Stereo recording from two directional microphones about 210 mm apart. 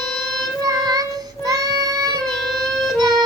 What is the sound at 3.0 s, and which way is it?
Accordion, 20° right (ahead or behind).